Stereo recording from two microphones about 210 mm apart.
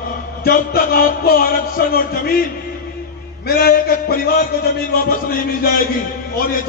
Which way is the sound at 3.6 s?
45° left (ahead or behind).